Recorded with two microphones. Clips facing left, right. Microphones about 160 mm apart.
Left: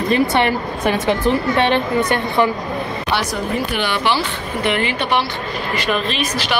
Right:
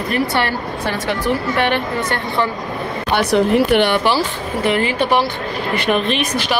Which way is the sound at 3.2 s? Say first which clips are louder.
Right 7 dB; 70° right (ahead or behind).